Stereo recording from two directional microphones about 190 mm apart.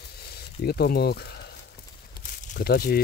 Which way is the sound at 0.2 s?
55° left (ahead or behind).